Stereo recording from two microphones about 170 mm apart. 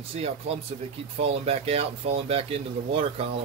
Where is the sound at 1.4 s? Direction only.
35° right (ahead or behind).